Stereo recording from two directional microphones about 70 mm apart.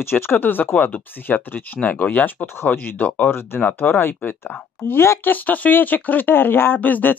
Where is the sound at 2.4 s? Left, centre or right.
Left.